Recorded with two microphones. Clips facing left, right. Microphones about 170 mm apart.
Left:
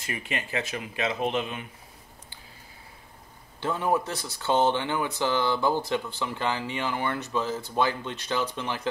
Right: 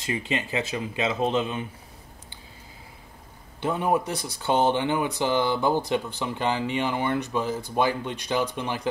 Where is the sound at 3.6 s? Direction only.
20° right (ahead or behind).